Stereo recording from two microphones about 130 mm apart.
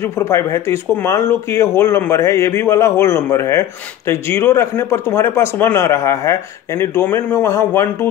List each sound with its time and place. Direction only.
0.0 s speech: 20° left (ahead or behind)